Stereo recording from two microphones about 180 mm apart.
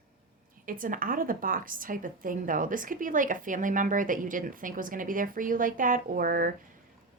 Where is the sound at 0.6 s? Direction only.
50° right (ahead or behind).